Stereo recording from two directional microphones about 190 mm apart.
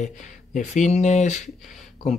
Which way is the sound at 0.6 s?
40° left (ahead or behind).